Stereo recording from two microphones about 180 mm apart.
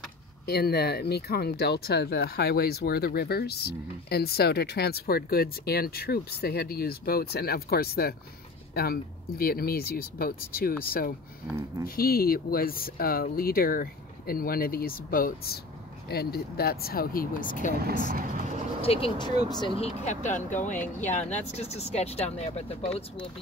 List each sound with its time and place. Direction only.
0.5 s speech: 60° left (ahead or behind)
18.8 s speech: 30° left (ahead or behind)